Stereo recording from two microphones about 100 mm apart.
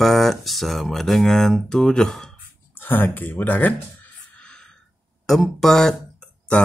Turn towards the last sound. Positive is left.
turn(degrees=5)  # may be behind; listen again after turning